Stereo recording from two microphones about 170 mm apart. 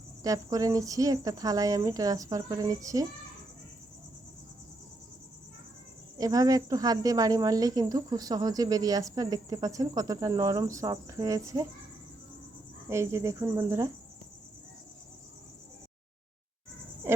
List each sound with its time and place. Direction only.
0.2 s speech: 20° right (ahead or behind)
6.1 s speech: 20° right (ahead or behind)
12.9 s speech: 15° right (ahead or behind)